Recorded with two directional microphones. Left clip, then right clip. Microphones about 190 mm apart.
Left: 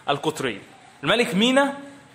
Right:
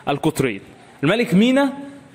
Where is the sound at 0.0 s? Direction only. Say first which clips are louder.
Right 4 dB; 35° right (ahead or behind).